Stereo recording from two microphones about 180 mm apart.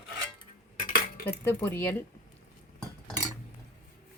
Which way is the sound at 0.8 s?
55° left (ahead or behind).